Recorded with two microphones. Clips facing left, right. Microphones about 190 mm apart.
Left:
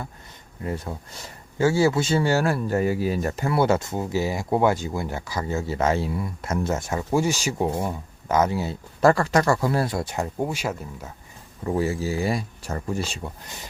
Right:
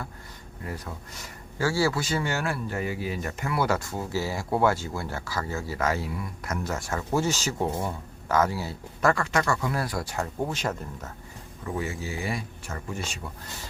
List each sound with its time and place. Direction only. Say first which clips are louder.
0.6 s speech: left 6 dB; 25° left (ahead or behind); by 11.1 s 10° left (ahead or behind)
11.6 s speech: left 8 dB; 35° left (ahead or behind)